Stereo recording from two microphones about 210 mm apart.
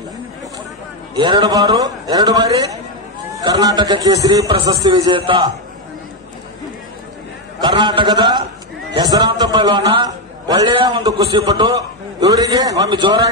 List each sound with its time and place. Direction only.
1.1 s a man's voice: 20° right (ahead or behind)
7.6 s a man's voice: 20° right (ahead or behind)